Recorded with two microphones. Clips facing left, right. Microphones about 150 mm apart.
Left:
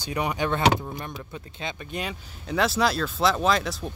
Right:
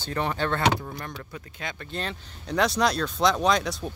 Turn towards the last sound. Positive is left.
turn(degrees=0)  # may be behind; listen again after turning